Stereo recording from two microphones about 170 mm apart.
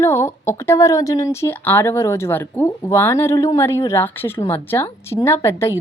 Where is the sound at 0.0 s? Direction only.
15° left (ahead or behind).